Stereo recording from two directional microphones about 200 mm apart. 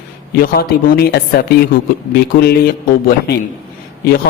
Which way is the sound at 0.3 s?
50° left (ahead or behind).